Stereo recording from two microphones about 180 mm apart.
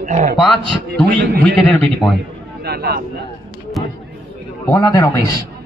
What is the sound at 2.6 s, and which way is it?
Speech, 60° right (ahead or behind).